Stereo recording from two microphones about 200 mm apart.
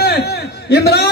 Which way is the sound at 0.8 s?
50° left (ahead or behind).